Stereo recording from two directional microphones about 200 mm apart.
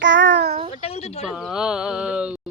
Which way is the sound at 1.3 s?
Centre (ahead or behind).